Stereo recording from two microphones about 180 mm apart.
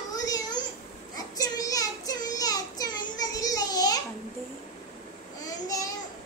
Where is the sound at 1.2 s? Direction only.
20° left (ahead or behind).